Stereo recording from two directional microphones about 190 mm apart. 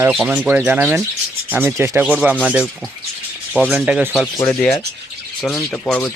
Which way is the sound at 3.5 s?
Centre (ahead or behind).